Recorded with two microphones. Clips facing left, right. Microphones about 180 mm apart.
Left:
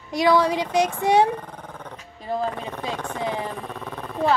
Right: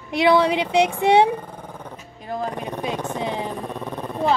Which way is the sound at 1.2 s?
10° right (ahead or behind).